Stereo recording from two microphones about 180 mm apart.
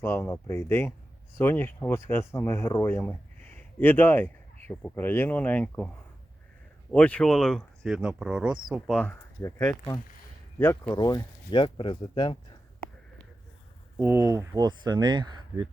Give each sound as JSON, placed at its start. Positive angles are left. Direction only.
{"t": 0.0, "sound": "speech", "side_deg": 15}
{"t": 6.9, "sound": "speech", "side_deg": 5}
{"t": 13.9, "sound": "speech", "side_deg": -10}